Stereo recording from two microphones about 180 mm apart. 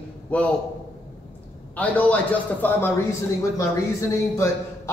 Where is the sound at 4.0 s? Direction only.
15° left (ahead or behind).